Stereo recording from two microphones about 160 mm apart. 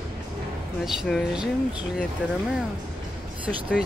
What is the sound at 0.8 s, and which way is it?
Speech, centre (ahead or behind).